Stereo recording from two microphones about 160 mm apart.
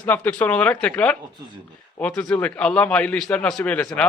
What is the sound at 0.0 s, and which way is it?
A man's voice, 10° left (ahead or behind).